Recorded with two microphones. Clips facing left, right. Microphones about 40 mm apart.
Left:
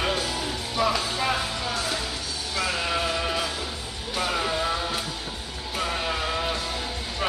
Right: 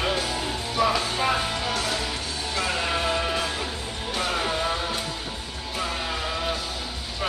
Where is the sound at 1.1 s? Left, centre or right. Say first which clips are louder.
Right 2 dB; centre.